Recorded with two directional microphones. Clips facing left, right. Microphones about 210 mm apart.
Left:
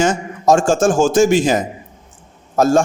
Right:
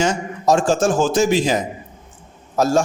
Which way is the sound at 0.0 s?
50° left (ahead or behind).